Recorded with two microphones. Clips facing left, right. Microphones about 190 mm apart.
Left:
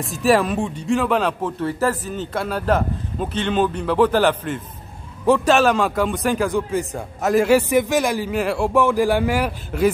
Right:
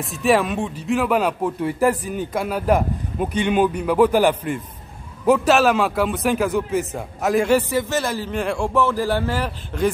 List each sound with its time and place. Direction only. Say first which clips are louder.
0.0 s a man's voice: left 1 dB; centre (ahead or behind)